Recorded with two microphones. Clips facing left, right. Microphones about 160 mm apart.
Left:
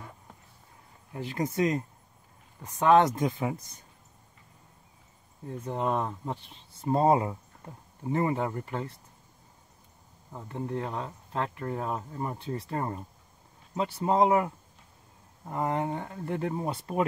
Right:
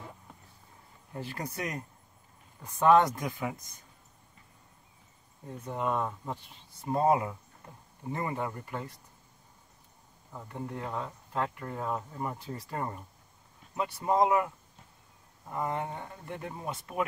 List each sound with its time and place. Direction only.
1.2 s speech: 20° left (ahead or behind)
5.7 s speech: 25° left (ahead or behind)
10.5 s speech: 25° left (ahead or behind)
15.5 s speech: 30° left (ahead or behind)